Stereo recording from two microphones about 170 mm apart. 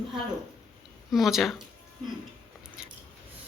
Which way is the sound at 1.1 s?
Centre (ahead or behind).